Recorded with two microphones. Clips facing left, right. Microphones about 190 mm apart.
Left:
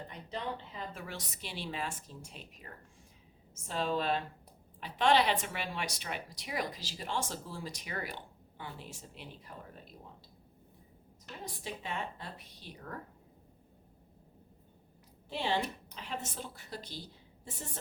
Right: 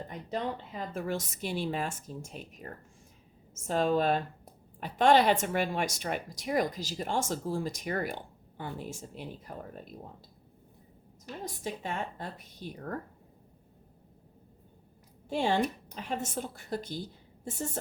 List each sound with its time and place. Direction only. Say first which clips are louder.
0.1 s a woman's voice: right 6 dB; 45° right (ahead or behind)
11.4 s a woman's voice: right 5 dB; 45° right (ahead or behind)
15.3 s a woman's voice: right 6 dB; 50° right (ahead or behind)